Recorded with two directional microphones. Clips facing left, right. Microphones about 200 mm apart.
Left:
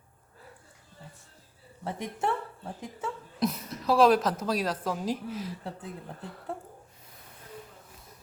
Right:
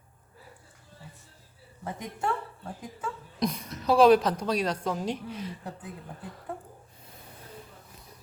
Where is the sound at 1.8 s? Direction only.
25° left (ahead or behind).